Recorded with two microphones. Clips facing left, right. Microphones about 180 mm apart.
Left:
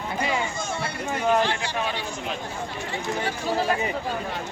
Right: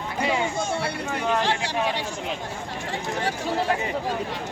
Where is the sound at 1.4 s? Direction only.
90° right.